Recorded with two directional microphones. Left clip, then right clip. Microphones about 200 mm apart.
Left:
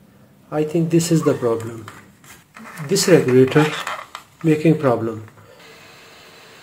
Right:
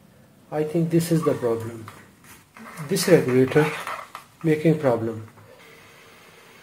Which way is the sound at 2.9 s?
20° left (ahead or behind).